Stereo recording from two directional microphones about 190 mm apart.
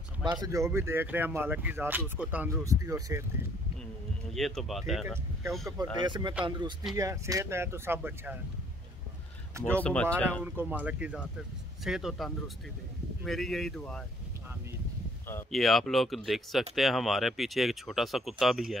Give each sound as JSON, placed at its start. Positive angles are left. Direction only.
{"t": 0.2, "sound": "speech", "side_deg": -20}
{"t": 4.3, "sound": "speech", "side_deg": 0}
{"t": 6.0, "sound": "speech", "side_deg": -25}
{"t": 9.6, "sound": "speech", "side_deg": -10}
{"t": 9.8, "sound": "speech", "side_deg": 5}
{"t": 10.4, "sound": "speech", "side_deg": -10}
{"t": 15.5, "sound": "speech", "side_deg": 0}